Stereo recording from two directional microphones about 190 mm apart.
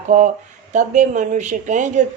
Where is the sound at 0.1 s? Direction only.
40° right (ahead or behind).